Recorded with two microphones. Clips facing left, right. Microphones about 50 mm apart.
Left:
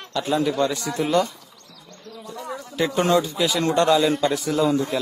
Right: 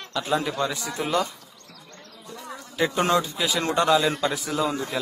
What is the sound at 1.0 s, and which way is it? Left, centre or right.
Speech, centre.